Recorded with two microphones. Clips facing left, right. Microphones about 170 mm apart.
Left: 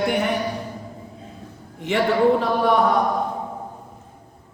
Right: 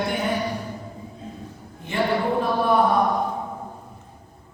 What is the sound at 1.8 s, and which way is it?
Speech, 85° left.